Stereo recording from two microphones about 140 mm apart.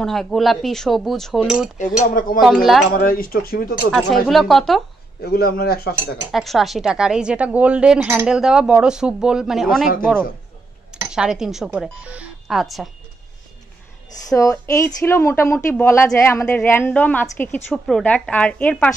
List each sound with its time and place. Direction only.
0.0 s speech: centre (ahead or behind)
2.1 s speech: 85° left
2.4 s speech: 5° right (ahead or behind)
2.9 s speech: 90° left
3.9 s speech: centre (ahead or behind)
5.3 s speech: 90° left
6.3 s speech: centre (ahead or behind)
10.9 s speech: 5° right (ahead or behind)
14.3 s a woman's voice: 25° left (ahead or behind)